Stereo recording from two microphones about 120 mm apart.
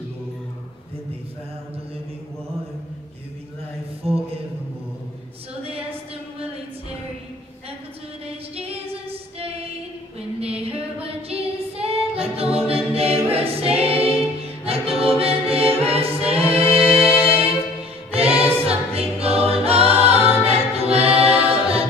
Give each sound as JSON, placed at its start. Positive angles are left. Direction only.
{"t": 4.0, "sound": "a sound", "side_deg": -55}
{"t": 5.6, "sound": "a sound", "side_deg": -55}
{"t": 8.3, "sound": "female singing", "side_deg": -55}
{"t": 10.4, "sound": "female singing", "side_deg": -55}
{"t": 14.6, "sound": "music", "side_deg": -55}
{"t": 18.7, "sound": "choir", "side_deg": -55}
{"t": 20.4, "sound": "music", "side_deg": -60}